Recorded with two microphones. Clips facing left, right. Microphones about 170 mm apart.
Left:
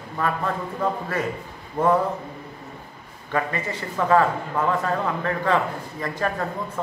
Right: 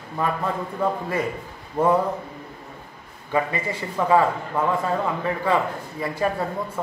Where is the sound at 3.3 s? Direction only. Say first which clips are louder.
Right 2 dB; 10° right (ahead or behind).